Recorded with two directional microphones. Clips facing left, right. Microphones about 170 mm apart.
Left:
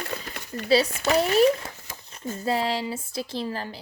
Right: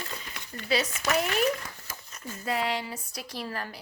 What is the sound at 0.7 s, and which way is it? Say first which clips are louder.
Speech: left 6 dB; 30° left (ahead or behind).